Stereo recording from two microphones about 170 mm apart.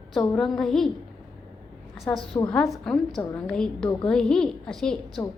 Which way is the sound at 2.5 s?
5° left (ahead or behind).